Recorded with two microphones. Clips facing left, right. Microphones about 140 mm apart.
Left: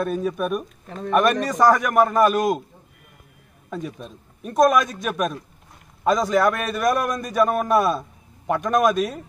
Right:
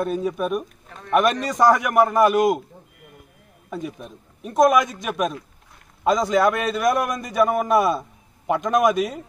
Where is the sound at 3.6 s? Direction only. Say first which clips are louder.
Even; 15° right (ahead or behind).